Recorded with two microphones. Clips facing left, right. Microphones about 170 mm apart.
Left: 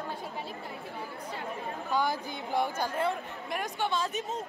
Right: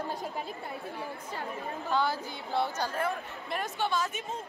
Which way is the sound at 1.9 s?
15° left (ahead or behind).